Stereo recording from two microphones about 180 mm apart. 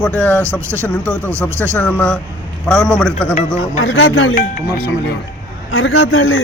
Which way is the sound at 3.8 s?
90° left.